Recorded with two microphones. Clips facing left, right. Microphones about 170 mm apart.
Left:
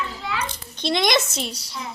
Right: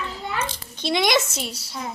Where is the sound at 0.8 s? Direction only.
10° right (ahead or behind).